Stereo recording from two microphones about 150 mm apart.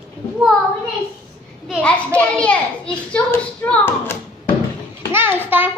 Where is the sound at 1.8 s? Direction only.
5° left (ahead or behind).